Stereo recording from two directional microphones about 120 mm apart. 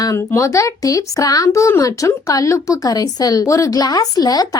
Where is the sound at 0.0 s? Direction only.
25° left (ahead or behind).